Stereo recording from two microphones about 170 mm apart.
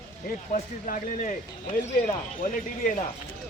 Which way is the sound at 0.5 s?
45° left (ahead or behind).